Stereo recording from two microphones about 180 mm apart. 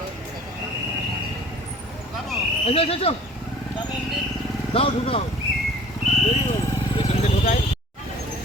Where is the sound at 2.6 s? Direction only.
30° left (ahead or behind).